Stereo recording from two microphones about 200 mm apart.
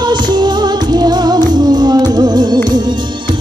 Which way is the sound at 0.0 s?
20° right (ahead or behind).